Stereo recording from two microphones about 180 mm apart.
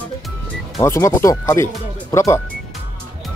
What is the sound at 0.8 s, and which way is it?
Speech, 15° left (ahead or behind).